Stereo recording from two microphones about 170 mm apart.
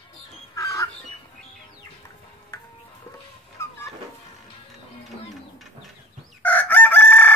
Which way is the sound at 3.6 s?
15° left (ahead or behind).